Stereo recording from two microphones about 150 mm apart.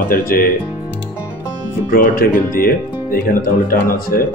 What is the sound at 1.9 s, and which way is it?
Speech, 75° left (ahead or behind).